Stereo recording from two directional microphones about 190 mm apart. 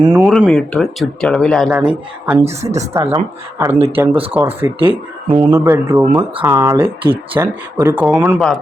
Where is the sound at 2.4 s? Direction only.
35° right (ahead or behind).